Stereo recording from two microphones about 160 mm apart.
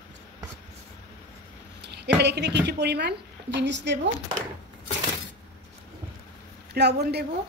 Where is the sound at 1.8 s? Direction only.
90° right.